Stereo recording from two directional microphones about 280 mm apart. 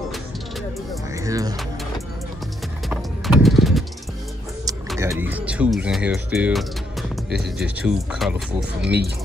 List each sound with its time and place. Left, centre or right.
1.1 s music: centre
2.9 s clip-clop: centre
4.9 s speech: centre